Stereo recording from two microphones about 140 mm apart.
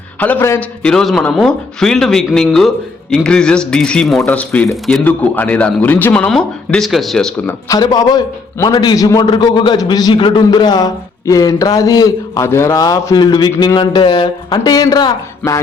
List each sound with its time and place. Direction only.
0.2 s a man's voice: 15° left (ahead or behind)
0.8 s a man's voice: 5° left (ahead or behind)
7.4 s a man's voice: 25° left (ahead or behind)